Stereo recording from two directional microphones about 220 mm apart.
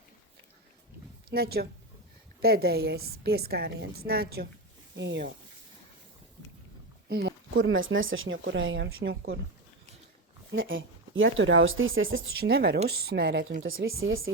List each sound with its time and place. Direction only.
1.3 s a woman's voice: 45° right (ahead or behind)
7.1 s speech: 50° right (ahead or behind)
10.5 s speech: 60° right (ahead or behind)
12.4 s a woman's voice: 45° right (ahead or behind)
13.8 s speech: 65° right (ahead or behind)